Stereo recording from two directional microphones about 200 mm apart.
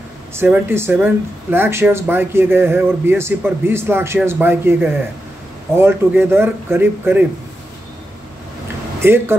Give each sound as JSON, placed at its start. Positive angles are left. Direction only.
{"t": 0.3, "sound": "speech", "side_deg": -10}
{"t": 9.0, "sound": "speech", "side_deg": -10}